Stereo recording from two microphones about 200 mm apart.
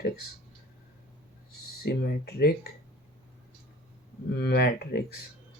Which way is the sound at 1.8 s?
50° left (ahead or behind).